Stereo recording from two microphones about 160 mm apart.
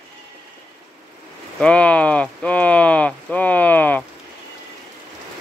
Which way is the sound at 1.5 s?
10° left (ahead or behind).